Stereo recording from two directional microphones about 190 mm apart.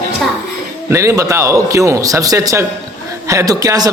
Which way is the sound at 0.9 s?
15° right (ahead or behind).